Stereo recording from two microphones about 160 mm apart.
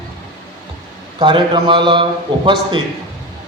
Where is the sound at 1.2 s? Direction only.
30° right (ahead or behind).